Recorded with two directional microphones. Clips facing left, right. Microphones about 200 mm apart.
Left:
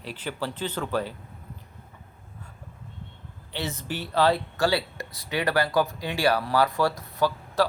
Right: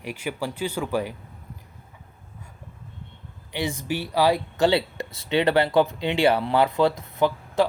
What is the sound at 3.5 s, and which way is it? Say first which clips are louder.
Speech: right 5 dB; 15° right (ahead or behind).